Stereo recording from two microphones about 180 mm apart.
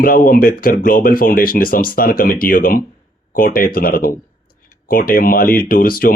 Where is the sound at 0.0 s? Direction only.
50° left (ahead or behind).